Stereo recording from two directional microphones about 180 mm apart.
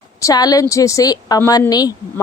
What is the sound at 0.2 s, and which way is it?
Speech, 20° left (ahead or behind).